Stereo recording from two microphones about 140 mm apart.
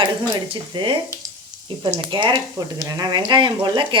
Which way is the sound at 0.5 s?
35° right (ahead or behind).